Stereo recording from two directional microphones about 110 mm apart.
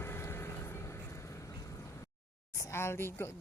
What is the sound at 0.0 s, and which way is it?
Vehicle, 20° left (ahead or behind).